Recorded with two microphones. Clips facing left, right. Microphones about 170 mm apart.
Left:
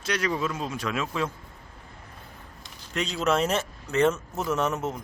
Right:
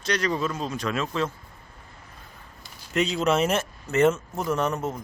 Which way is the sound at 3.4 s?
Centre (ahead or behind).